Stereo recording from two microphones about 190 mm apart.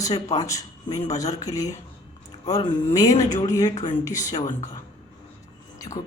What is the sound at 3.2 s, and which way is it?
Speech, 40° left (ahead or behind).